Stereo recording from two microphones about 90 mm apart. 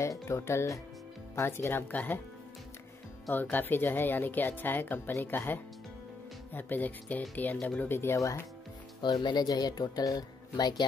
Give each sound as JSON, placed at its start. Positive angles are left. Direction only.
{"t": 0.0, "sound": "a woman's voice", "side_deg": 35}
{"t": 3.3, "sound": "a woman's voice", "side_deg": 20}
{"t": 9.0, "sound": "speech", "side_deg": 55}